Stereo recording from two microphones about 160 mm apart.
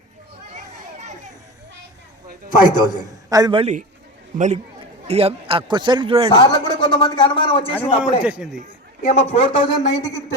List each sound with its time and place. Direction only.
0.5 s children playing: 45° right (ahead or behind)
2.8 s a man's voice: 20° right (ahead or behind)
3.6 s speech: 45° right (ahead or behind)
6.3 s speech: 30° left (ahead or behind)
8.2 s a man's voice: 5° right (ahead or behind)
9.0 s speech: 40° left (ahead or behind); by 10.2 s 20° left (ahead or behind)